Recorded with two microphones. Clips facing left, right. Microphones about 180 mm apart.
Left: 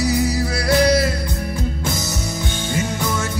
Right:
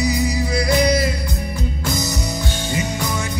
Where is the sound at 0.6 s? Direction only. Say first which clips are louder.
Left 3 dB; 15° right (ahead or behind).